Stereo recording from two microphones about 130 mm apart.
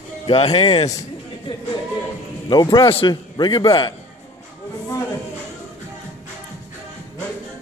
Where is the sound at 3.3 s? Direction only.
35° left (ahead or behind).